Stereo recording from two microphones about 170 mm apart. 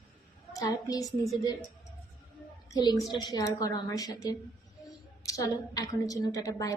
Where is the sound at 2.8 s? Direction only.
25° left (ahead or behind).